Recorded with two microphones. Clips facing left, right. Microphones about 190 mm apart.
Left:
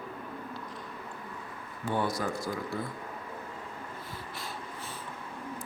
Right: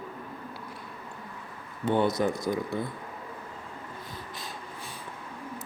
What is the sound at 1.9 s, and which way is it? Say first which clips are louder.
Speech: right 6 dB; 20° right (ahead or behind).